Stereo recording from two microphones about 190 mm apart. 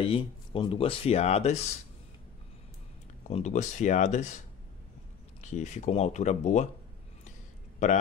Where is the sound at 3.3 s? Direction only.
40° left (ahead or behind).